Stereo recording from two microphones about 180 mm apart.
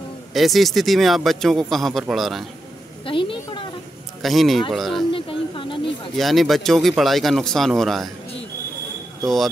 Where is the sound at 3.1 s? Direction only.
30° left (ahead or behind).